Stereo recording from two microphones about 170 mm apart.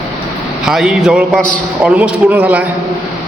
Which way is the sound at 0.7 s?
Centre (ahead or behind).